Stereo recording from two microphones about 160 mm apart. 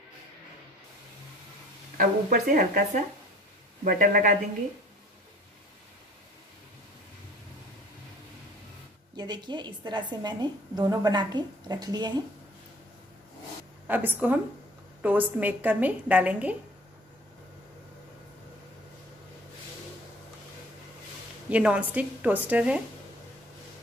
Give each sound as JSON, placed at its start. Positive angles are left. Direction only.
{"t": 2.0, "sound": "speech", "side_deg": -65}
{"t": 9.1, "sound": "a woman's voice", "side_deg": -25}
{"t": 13.8, "sound": "a woman's voice", "side_deg": -10}
{"t": 21.5, "sound": "a woman's voice", "side_deg": -10}